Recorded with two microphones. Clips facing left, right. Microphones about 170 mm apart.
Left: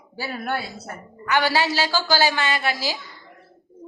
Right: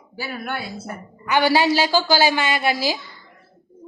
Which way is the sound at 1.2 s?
15° right (ahead or behind).